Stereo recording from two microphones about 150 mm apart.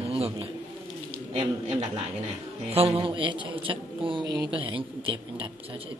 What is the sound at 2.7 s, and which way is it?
Speech, 40° right (ahead or behind).